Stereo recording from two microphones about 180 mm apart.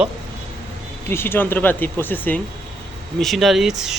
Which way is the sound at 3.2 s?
Centre (ahead or behind).